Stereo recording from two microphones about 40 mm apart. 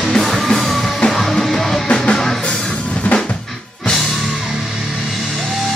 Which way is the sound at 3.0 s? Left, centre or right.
Left.